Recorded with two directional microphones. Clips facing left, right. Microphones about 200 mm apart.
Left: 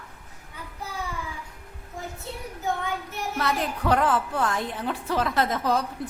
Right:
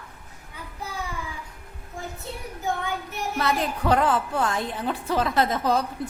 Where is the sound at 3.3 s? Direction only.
25° right (ahead or behind).